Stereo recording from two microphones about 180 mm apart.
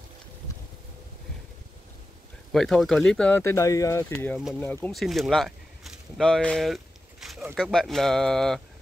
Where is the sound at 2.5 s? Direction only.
Centre (ahead or behind).